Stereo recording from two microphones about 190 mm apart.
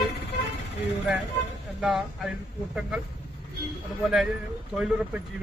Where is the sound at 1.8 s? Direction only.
Centre (ahead or behind).